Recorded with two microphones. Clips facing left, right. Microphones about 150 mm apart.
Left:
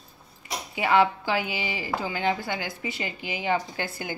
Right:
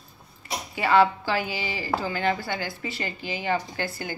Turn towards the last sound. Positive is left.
turn(degrees=20)  # may be behind; listen again after turning